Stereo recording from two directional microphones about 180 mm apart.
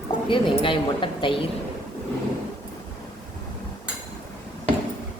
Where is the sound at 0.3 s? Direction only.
30° left (ahead or behind).